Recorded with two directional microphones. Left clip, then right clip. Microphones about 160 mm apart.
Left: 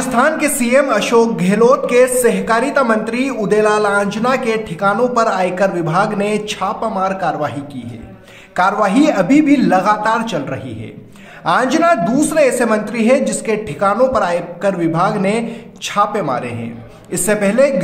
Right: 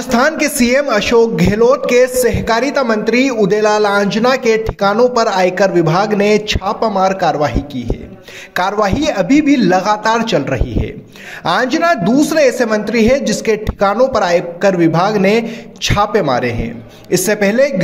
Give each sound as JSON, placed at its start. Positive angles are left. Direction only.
{"t": 0.1, "sound": "a man's voice", "side_deg": -40}